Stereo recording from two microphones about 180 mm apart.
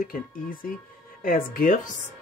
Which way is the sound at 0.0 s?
50° left (ahead or behind).